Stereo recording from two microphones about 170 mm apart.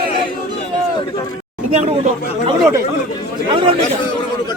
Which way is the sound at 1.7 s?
45° right (ahead or behind).